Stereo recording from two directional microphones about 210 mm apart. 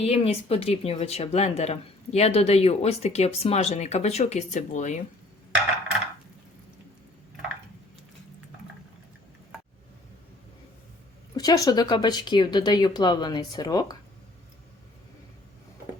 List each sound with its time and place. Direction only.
0.0 s speech: 30° left (ahead or behind)
11.3 s speech: 15° left (ahead or behind)